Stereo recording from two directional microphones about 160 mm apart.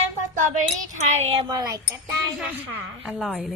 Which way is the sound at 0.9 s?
45° right (ahead or behind).